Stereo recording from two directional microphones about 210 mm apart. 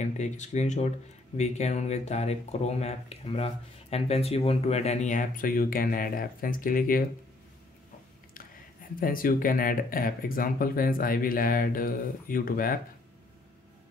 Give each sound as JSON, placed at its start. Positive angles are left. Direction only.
{"t": 0.0, "sound": "speech", "side_deg": 35}
{"t": 9.0, "sound": "speech", "side_deg": 40}